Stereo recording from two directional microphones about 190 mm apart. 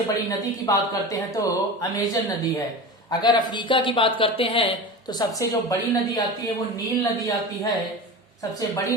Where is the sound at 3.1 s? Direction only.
25° left (ahead or behind).